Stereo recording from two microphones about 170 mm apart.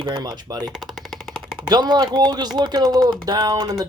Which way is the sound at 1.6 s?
25° right (ahead or behind).